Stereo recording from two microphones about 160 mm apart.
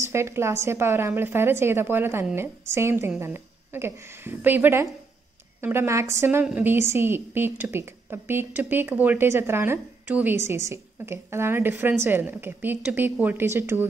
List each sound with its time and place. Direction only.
0.0 s a woman's voice: 15° right (ahead or behind)